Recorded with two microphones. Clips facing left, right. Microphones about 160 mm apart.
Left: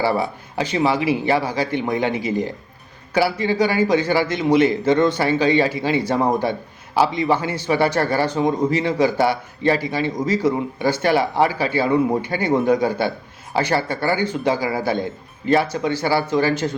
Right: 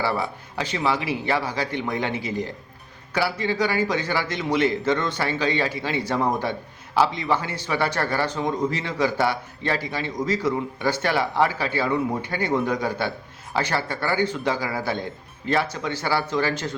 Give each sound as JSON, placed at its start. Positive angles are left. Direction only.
{"t": 0.0, "sound": "a man's voice", "side_deg": 15}